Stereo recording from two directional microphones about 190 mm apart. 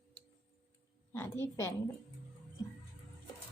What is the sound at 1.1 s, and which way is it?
Speech, 15° left (ahead or behind).